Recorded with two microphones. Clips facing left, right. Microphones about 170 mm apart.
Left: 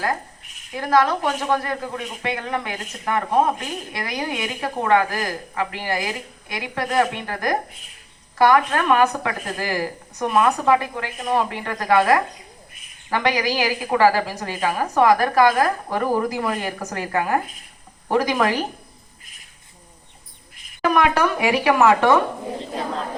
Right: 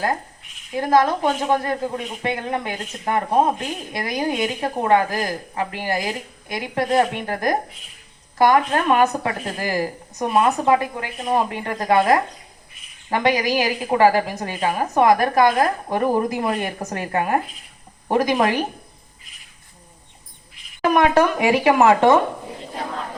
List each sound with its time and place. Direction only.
0.8 s a woman's voice: 20° right (ahead or behind)
6.0 s a woman's voice: 40° right (ahead or behind)
6.7 s a woman's voice: 20° right (ahead or behind)
20.9 s a woman's voice: 20° right (ahead or behind)